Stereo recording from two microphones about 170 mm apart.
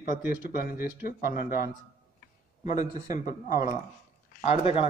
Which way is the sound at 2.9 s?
45° left (ahead or behind).